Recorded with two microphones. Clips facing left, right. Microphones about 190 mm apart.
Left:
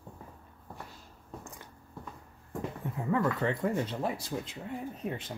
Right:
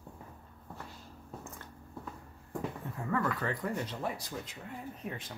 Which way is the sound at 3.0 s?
20° left (ahead or behind).